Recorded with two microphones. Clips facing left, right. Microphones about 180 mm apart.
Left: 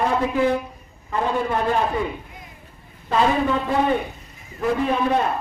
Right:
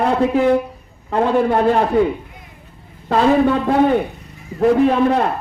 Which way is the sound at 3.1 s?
65° right (ahead or behind).